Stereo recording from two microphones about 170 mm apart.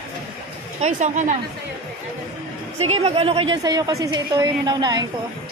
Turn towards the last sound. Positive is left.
turn(degrees=-25)  # may be behind; listen again after turning